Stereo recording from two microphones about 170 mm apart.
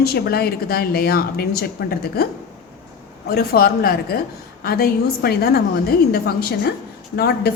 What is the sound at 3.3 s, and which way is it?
A woman's voice, 65° left (ahead or behind).